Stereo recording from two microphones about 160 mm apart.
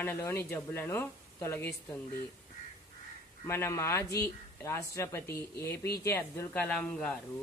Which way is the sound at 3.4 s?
15° left (ahead or behind).